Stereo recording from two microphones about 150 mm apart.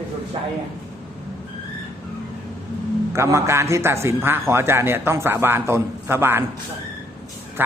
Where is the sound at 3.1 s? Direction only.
20° right (ahead or behind).